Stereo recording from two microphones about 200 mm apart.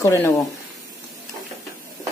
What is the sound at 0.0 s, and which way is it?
Speech, 15° left (ahead or behind).